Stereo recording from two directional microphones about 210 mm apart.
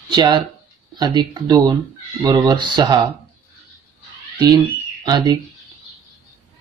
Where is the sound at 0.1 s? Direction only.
20° right (ahead or behind).